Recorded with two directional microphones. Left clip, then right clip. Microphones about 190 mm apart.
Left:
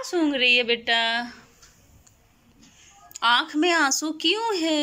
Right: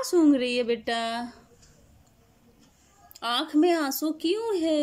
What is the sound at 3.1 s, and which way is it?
A woman's voice, 25° right (ahead or behind).